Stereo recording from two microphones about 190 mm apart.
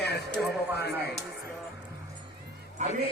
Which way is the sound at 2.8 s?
35° right (ahead or behind).